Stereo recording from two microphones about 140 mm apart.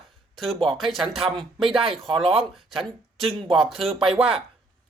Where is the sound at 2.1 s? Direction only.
40° right (ahead or behind).